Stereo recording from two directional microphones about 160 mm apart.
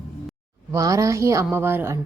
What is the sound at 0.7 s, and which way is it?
A woman's voice, 20° right (ahead or behind).